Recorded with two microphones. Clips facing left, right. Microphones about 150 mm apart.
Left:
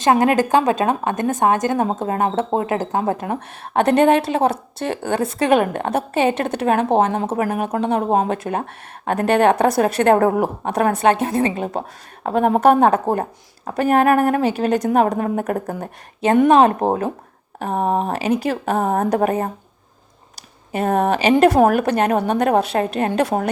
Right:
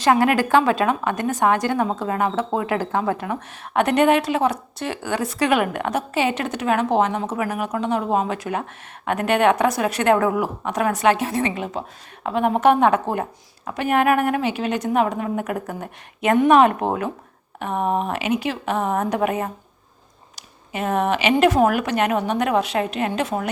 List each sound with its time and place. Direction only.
0.0 s a woman's voice: 25° left (ahead or behind)
0.4 s a woman's voice: 40° left (ahead or behind)
1.4 s a woman's voice: 20° left (ahead or behind)
1.6 s a woman's voice: 45° left (ahead or behind); by 5.5 s 25° left (ahead or behind)
5.5 s a woman's voice: 40° left (ahead or behind)
6.9 s a woman's voice: 50° left (ahead or behind)
8.0 s a woman's voice: 45° left (ahead or behind)
23.1 s a woman's voice: 55° left (ahead or behind)